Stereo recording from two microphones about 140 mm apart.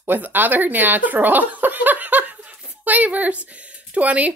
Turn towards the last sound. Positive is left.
turn(degrees=-10)  # may be behind; listen again after turning